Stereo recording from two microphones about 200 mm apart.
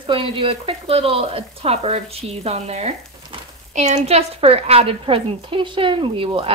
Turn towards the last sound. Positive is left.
turn(degrees=-25)  # may be behind; listen again after turning